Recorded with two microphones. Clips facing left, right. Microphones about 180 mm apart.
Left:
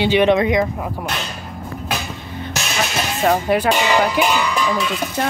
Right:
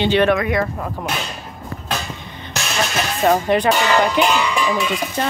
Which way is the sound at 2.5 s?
Centre (ahead or behind).